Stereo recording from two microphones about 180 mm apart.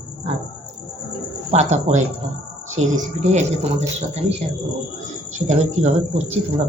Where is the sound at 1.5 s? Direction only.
40° right (ahead or behind).